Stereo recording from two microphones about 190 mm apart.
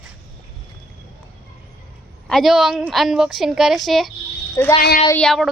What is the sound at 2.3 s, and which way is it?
A woman's voice, centre (ahead or behind).